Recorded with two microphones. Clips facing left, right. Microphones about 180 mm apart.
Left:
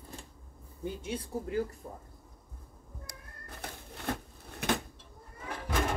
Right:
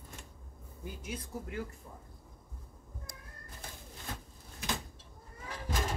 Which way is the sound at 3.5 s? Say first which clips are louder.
Left 6 dB; 65° left (ahead or behind).